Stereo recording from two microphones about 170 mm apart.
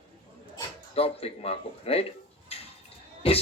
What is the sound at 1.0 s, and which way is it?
A man's voice, 35° left (ahead or behind).